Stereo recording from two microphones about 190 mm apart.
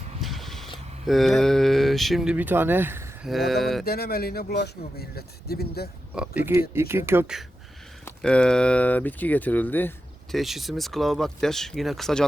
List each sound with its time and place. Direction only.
0.2 s vehicle: centre (ahead or behind)
1.0 s speech: centre (ahead or behind)
3.2 s speech: centre (ahead or behind)
3.8 s speech: 55° left (ahead or behind)
6.1 s speech: 10° right (ahead or behind)
8.0 s speech: 5° left (ahead or behind)
10.3 s speech: centre (ahead or behind)